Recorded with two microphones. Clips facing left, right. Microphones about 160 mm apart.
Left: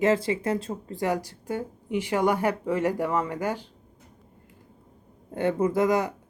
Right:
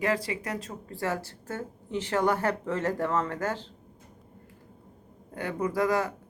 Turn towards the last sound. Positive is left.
turn(degrees=20)  # may be behind; listen again after turning